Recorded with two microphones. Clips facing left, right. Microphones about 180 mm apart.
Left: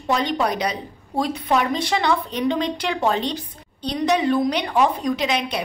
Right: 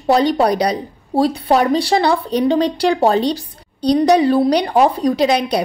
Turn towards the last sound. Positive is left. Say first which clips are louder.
# right 7 dB
turn(degrees=-35)  # may be behind; listen again after turning